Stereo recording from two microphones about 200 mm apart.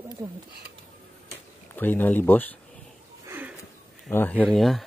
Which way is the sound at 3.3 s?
10° right (ahead or behind).